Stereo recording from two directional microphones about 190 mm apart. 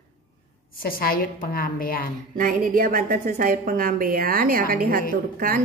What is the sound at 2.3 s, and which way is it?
A woman's voice, 50° right (ahead or behind).